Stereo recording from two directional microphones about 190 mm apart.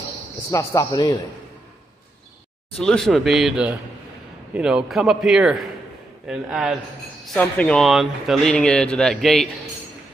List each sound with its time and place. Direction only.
0.5 s speech: 15° left (ahead or behind)
2.8 s speech: 5° left (ahead or behind)